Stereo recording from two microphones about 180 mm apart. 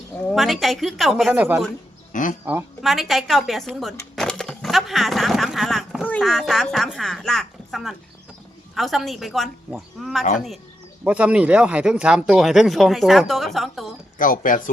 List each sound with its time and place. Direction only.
0.3 s speech: centre (ahead or behind)
2.1 s speech: 45° left (ahead or behind)
2.8 s a sound: centre (ahead or behind)
6.1 s speech: 5° left (ahead or behind)
14.2 s speech: 50° left (ahead or behind)